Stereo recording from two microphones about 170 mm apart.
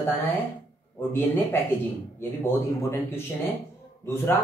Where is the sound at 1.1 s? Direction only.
15° left (ahead or behind).